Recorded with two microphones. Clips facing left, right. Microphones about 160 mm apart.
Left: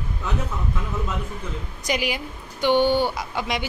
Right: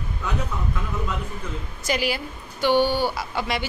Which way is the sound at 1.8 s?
15° left (ahead or behind).